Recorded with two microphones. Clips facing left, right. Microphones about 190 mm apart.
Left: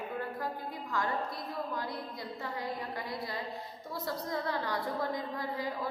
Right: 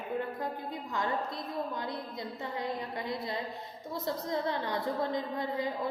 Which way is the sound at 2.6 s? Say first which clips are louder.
Right 2 dB; 20° right (ahead or behind).